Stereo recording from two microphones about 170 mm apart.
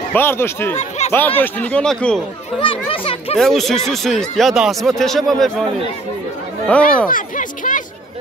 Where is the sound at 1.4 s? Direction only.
10° left (ahead or behind).